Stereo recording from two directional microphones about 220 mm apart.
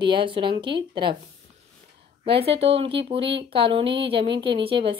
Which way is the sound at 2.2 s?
25° right (ahead or behind).